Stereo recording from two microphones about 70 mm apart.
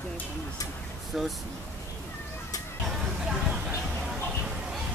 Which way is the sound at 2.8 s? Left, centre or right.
Centre.